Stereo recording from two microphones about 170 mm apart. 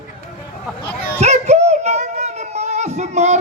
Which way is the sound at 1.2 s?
40° right (ahead or behind).